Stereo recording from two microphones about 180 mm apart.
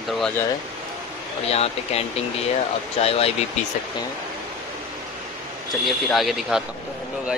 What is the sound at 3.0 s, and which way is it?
Speech, 35° left (ahead or behind).